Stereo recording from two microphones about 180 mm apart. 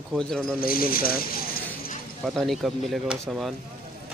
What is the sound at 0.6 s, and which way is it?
Speech, 55° left (ahead or behind).